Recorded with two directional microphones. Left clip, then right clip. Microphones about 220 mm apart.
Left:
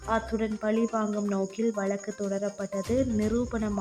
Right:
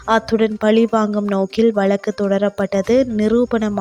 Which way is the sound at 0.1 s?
40° right (ahead or behind).